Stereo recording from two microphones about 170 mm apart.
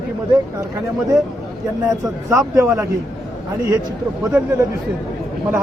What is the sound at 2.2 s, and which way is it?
Speech, 15° right (ahead or behind).